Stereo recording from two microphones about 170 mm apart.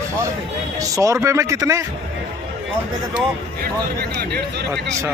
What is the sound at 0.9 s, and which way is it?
Speech, 20° right (ahead or behind).